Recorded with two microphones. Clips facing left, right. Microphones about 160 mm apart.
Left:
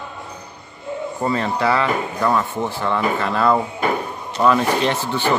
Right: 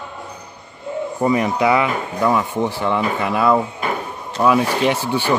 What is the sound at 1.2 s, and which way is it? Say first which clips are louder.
Speech: right 4 dB; 15° right (ahead or behind).